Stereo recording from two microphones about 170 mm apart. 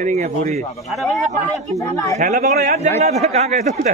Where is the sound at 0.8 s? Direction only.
Centre (ahead or behind).